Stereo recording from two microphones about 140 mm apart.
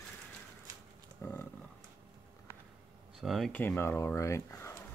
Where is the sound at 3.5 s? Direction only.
15° left (ahead or behind).